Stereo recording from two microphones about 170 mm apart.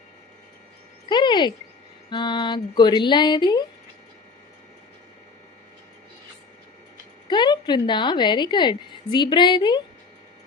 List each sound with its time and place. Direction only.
1.0 s a sound: 25° left (ahead or behind)
2.0 s a woman's voice: 25° left (ahead or behind)
7.3 s a woman's voice: 25° left (ahead or behind)